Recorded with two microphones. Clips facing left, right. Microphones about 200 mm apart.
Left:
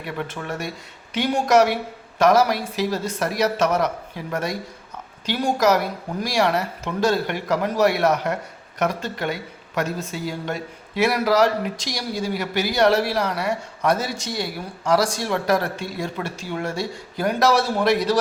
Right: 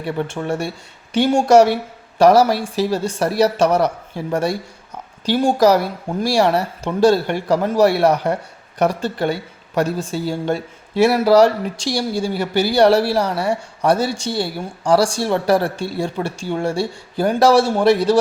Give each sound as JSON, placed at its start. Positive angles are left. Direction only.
{"t": 0.0, "sound": "a woman's voice", "side_deg": -30}